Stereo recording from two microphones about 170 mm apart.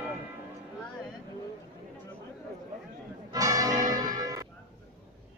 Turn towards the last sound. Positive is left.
turn(degrees=-20)  # may be behind; listen again after turning